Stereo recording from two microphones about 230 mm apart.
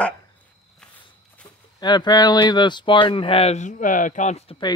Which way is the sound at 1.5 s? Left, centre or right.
Centre.